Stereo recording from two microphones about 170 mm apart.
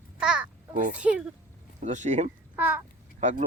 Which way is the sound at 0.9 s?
5° right (ahead or behind).